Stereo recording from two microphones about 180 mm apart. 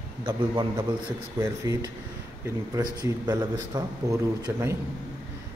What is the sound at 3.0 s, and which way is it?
A man's voice, 20° right (ahead or behind).